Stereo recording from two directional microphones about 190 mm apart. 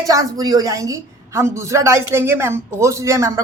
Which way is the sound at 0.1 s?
20° right (ahead or behind).